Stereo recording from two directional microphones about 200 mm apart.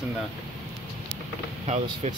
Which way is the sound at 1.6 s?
35° right (ahead or behind).